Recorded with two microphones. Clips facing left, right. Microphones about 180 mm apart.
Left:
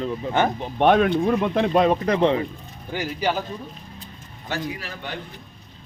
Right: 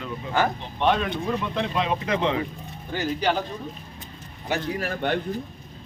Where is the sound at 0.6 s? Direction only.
50° left (ahead or behind).